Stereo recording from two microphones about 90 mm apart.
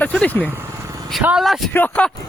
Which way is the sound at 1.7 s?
15° left (ahead or behind).